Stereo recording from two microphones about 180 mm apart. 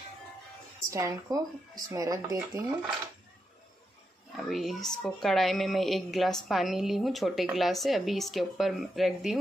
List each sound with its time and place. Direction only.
0.7 s speech: 15° right (ahead or behind)
4.5 s a woman's voice: centre (ahead or behind)